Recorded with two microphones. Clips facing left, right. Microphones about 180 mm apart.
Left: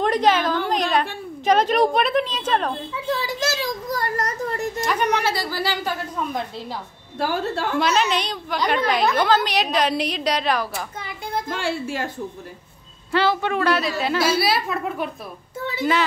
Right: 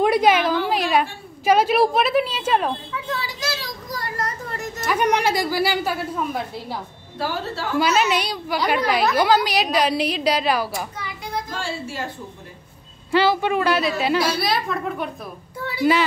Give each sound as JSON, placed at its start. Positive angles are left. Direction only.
{"t": 0.0, "sound": "a sound", "side_deg": -10}
{"t": 1.4, "sound": "a woman's voice", "side_deg": -10}
{"t": 2.9, "sound": "a sound", "side_deg": 40}
{"t": 4.8, "sound": "a woman's voice", "side_deg": -10}
{"t": 7.2, "sound": "a woman's voice", "side_deg": 55}
{"t": 7.7, "sound": "a woman's voice", "side_deg": -5}
{"t": 11.4, "sound": "a woman's voice", "side_deg": 55}
{"t": 13.1, "sound": "a woman's voice", "side_deg": -5}